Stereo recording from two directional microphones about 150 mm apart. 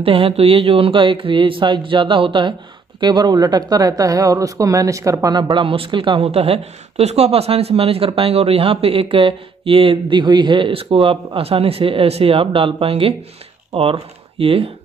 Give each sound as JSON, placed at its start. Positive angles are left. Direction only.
{"t": 0.0, "sound": "speech", "side_deg": -40}